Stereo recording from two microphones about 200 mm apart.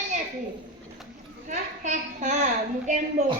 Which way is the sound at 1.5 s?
35° right (ahead or behind).